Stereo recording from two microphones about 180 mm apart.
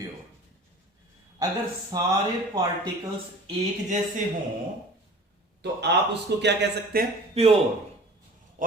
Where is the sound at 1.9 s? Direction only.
20° right (ahead or behind).